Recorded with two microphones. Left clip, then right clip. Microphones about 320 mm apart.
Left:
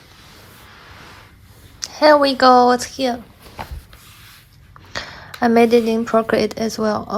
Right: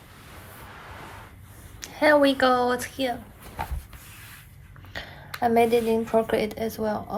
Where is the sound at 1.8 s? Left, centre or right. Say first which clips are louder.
Left 7 dB; centre.